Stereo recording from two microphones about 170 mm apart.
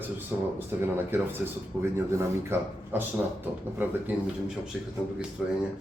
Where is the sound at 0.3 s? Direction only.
10° right (ahead or behind).